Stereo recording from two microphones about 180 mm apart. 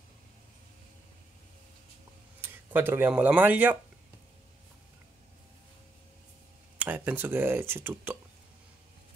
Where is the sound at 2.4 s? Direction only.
10° right (ahead or behind).